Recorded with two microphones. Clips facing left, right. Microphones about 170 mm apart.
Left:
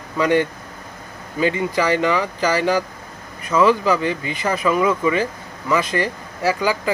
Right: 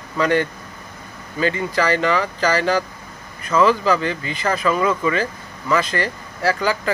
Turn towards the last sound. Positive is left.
turn(degrees=15)  # may be behind; listen again after turning